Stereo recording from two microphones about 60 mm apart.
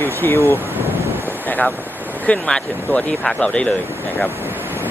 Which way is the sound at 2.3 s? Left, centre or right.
Centre.